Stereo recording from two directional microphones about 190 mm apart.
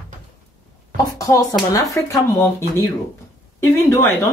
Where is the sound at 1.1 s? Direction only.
20° left (ahead or behind).